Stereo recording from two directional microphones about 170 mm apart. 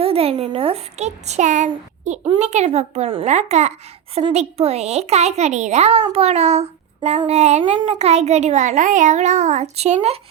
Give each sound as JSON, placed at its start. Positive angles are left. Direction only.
{"t": 0.0, "sound": "a child's voice", "side_deg": -35}